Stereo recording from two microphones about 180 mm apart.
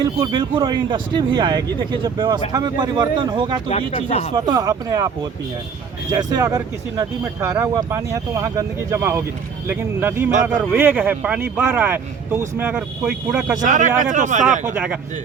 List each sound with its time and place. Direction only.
0.0 s speech: 25° right (ahead or behind)
3.7 s speech: 35° left (ahead or behind)
4.4 s speech: 20° right (ahead or behind)
13.6 s speech: 45° right (ahead or behind)
14.7 s speech: 10° right (ahead or behind)